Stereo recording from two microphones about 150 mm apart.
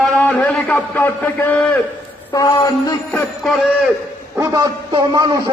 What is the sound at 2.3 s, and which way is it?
Speech, 25° left (ahead or behind).